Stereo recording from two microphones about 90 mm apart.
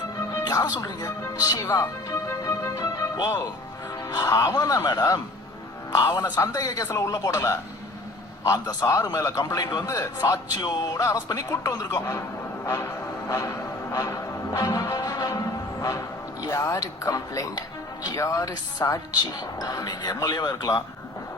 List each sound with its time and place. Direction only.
0.2 s speech: 40° left (ahead or behind)
2.0 s music: 35° left (ahead or behind)
4.0 s a man's voice: 45° left (ahead or behind)
12.6 s music: 30° left (ahead or behind)
16.4 s a man's voice: 40° left (ahead or behind)